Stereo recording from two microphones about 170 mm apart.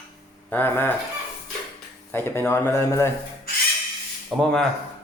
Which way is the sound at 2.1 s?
15° left (ahead or behind).